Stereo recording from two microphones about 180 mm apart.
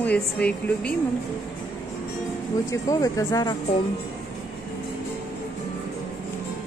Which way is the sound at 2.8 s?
20° left (ahead or behind).